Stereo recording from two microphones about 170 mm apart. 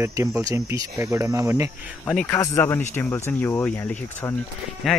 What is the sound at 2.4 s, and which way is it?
A man's voice, 15° left (ahead or behind).